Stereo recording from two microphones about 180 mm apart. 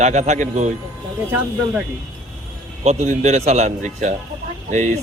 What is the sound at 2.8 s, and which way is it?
A man's voice, 40° right (ahead or behind).